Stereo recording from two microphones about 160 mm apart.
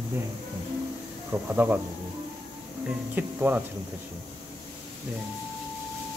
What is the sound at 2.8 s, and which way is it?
Speech, 10° right (ahead or behind).